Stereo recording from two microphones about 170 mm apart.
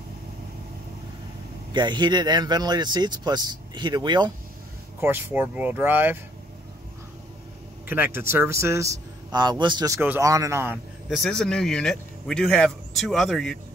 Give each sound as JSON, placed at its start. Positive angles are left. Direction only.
{"t": 1.7, "sound": "speech", "side_deg": -25}
{"t": 5.0, "sound": "a man's voice", "side_deg": -10}
{"t": 7.9, "sound": "a man's voice", "side_deg": -10}
{"t": 9.9, "sound": "a man's voice", "side_deg": -10}
{"t": 11.1, "sound": "a man's voice", "side_deg": 0}